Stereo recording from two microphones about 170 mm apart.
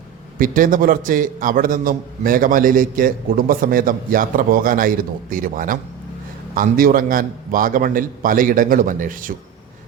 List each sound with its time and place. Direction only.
0.3 s a man's voice: 55° right (ahead or behind)